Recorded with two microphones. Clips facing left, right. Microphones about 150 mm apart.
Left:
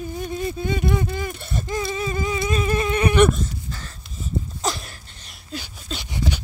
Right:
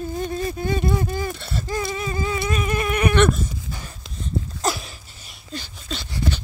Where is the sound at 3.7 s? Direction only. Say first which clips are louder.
Right 1 dB; 15° right (ahead or behind).